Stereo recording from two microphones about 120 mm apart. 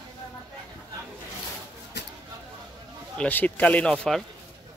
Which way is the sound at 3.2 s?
15° left (ahead or behind).